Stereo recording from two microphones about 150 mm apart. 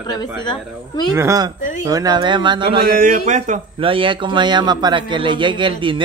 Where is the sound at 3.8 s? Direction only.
35° right (ahead or behind).